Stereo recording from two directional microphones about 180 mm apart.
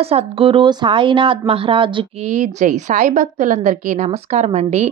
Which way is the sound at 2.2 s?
40° right (ahead or behind).